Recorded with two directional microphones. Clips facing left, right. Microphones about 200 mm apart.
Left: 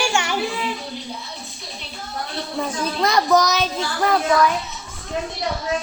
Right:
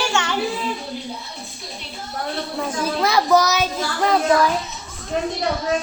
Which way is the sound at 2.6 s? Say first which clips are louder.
Even; 5° right (ahead or behind).